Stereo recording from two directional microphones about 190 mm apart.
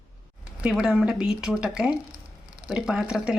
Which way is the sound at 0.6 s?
5° right (ahead or behind).